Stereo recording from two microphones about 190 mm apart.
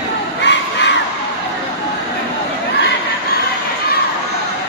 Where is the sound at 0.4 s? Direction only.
65° left (ahead or behind).